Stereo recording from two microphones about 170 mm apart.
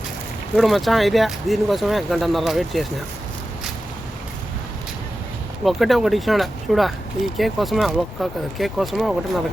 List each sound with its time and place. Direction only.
0.5 s speech: centre (ahead or behind)
5.6 s speech: centre (ahead or behind)